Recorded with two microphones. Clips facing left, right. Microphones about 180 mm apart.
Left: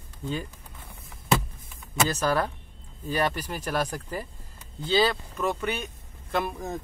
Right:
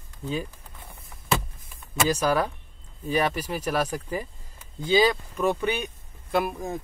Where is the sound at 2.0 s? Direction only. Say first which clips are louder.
Right 3 dB; 10° right (ahead or behind).